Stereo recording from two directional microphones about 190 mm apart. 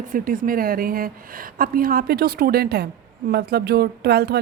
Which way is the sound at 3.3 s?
60° right (ahead or behind).